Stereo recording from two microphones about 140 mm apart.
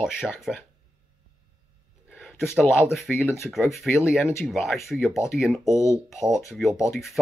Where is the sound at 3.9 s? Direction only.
Centre (ahead or behind).